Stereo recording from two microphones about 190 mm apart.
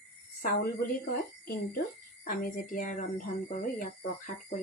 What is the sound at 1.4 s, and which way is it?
Speech, 50° left (ahead or behind).